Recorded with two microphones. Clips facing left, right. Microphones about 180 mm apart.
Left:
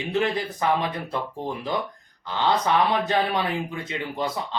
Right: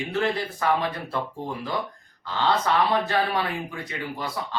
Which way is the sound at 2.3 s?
20° left (ahead or behind).